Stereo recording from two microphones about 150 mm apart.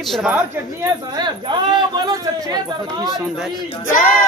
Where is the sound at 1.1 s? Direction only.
30° right (ahead or behind).